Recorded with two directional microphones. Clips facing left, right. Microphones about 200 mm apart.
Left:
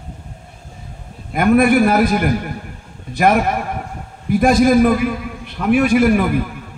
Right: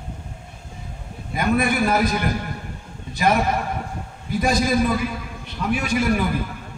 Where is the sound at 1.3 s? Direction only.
55° left (ahead or behind).